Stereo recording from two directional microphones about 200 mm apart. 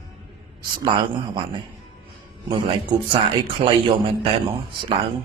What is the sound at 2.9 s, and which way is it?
Speech, 25° right (ahead or behind).